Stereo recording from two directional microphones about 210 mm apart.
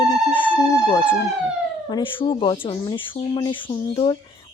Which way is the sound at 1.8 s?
20° left (ahead or behind).